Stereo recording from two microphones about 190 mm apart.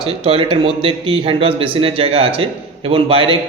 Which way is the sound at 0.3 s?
30° right (ahead or behind).